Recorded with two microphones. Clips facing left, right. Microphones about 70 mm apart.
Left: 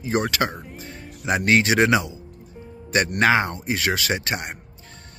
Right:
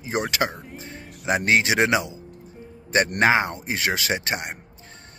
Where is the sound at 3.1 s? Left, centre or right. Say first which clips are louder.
Left 2 dB; right.